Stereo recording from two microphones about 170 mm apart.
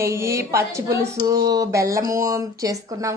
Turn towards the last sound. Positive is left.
turn(degrees=-20)  # may be behind; listen again after turning